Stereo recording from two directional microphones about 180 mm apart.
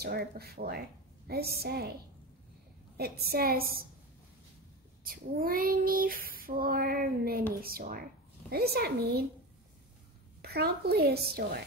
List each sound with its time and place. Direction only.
0.0 s a woman's voice: 60° right (ahead or behind)
3.0 s a woman's voice: 55° right (ahead or behind)
5.0 s female singing: 50° right (ahead or behind)
8.5 s a woman's voice: 60° right (ahead or behind)
10.4 s a woman's voice: 60° right (ahead or behind)